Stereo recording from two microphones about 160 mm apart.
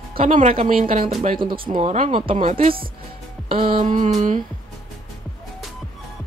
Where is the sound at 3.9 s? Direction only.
50° right (ahead or behind).